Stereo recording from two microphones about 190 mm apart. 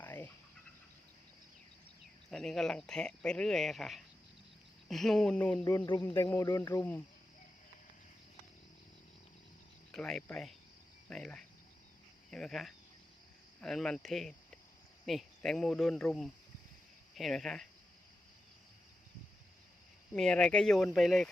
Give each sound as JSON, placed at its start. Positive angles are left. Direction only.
{"t": 0.0, "sound": "chicken", "side_deg": 10}
{"t": 2.3, "sound": "speech", "side_deg": 5}
{"t": 5.6, "sound": "speech", "side_deg": 20}
{"t": 6.1, "sound": "speech", "side_deg": 5}
{"t": 6.3, "sound": "speech", "side_deg": 15}
{"t": 9.9, "sound": "speech", "side_deg": 5}
{"t": 20.1, "sound": "speech", "side_deg": 5}